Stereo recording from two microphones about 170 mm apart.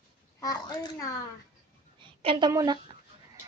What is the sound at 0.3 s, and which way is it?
Speech, 20° left (ahead or behind).